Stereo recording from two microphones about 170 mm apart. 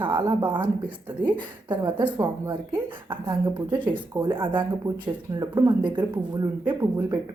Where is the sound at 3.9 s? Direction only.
25° right (ahead or behind).